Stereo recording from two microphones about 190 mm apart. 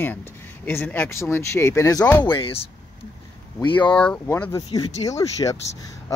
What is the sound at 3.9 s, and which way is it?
Speech, 10° left (ahead or behind).